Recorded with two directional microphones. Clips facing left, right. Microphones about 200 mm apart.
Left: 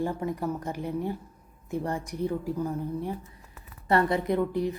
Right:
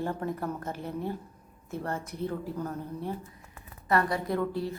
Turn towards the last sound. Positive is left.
turn(degrees=15)  # may be behind; listen again after turning